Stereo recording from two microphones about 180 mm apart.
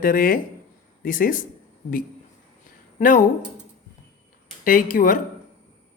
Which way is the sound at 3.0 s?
45° left (ahead or behind).